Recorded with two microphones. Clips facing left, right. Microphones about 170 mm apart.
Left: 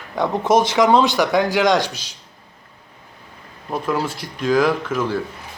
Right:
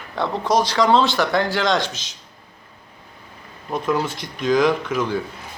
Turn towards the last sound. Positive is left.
turn(degrees=5)  # may be behind; listen again after turning